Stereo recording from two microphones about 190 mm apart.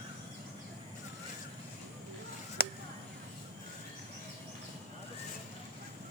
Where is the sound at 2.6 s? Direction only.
55° left (ahead or behind).